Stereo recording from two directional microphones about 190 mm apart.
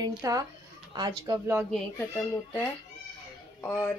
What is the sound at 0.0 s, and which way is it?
Speech, 20° right (ahead or behind).